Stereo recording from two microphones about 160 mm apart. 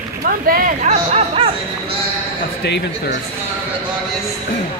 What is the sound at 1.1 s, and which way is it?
Music, 40° right (ahead or behind).